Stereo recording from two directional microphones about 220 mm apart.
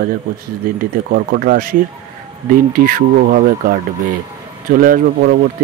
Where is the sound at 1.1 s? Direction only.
40° right (ahead or behind).